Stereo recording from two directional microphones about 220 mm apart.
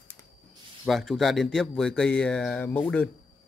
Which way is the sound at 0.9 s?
Centre (ahead or behind).